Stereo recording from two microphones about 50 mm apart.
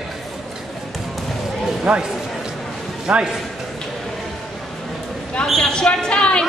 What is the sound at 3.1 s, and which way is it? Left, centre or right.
Speech, centre.